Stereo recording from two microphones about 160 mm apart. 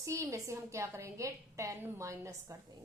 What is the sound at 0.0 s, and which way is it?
A woman's voice, 20° right (ahead or behind).